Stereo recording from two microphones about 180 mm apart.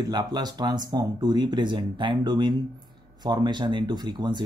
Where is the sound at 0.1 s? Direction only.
20° right (ahead or behind).